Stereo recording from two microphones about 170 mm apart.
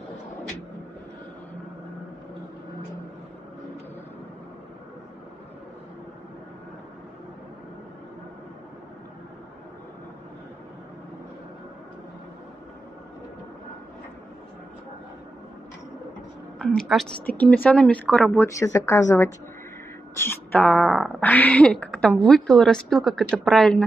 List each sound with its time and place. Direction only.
16.5 s speech: 5° left (ahead or behind)
18.4 s a woman's voice: 15° left (ahead or behind)